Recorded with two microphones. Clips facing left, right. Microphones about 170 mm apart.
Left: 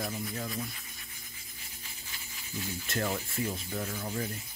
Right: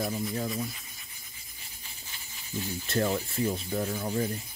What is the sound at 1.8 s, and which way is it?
Speech, 25° right (ahead or behind).